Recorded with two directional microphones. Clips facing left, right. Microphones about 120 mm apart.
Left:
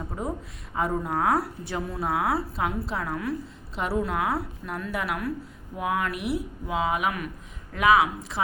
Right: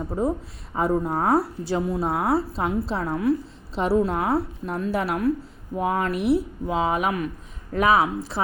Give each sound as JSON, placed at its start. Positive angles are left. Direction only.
{"t": 0.2, "sound": "a woman's voice", "side_deg": -30}